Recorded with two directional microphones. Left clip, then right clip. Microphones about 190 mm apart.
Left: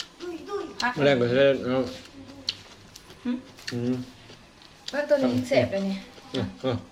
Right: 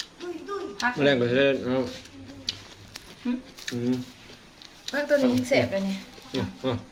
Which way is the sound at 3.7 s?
10° right (ahead or behind).